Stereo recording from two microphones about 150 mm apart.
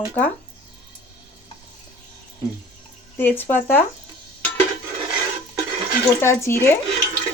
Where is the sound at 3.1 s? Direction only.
15° left (ahead or behind).